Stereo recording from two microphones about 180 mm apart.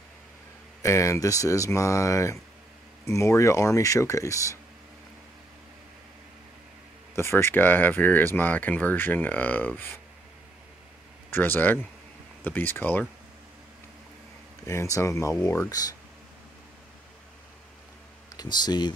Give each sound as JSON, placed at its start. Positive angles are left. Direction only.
{"t": 0.8, "sound": "speech", "side_deg": 15}
{"t": 7.2, "sound": "speech", "side_deg": 15}
{"t": 11.2, "sound": "speech", "side_deg": 10}
{"t": 14.7, "sound": "speech", "side_deg": 15}
{"t": 18.3, "sound": "speech", "side_deg": 20}